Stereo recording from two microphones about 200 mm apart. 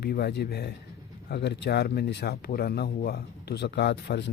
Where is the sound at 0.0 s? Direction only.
50° left (ahead or behind).